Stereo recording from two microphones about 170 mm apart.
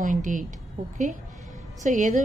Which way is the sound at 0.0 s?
50° right (ahead or behind).